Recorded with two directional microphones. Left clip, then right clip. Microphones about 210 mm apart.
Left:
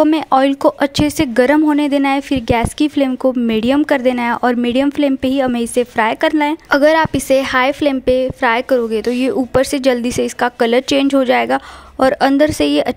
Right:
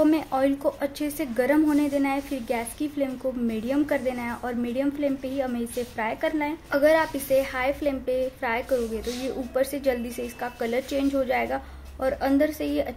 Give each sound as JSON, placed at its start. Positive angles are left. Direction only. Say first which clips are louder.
{"t": 0.0, "sound": "speech", "louder": "left 10 dB", "side_deg": 50}